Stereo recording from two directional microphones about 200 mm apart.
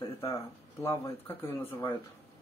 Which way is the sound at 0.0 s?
20° left (ahead or behind).